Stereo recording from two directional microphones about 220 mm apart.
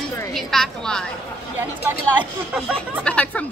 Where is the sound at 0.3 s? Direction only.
Centre (ahead or behind).